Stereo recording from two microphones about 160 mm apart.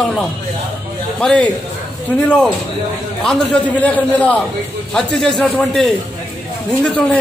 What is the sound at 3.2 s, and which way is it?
A man's voice, 5° left (ahead or behind).